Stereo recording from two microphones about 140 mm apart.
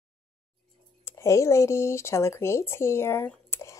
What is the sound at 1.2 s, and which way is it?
Speech, 20° left (ahead or behind).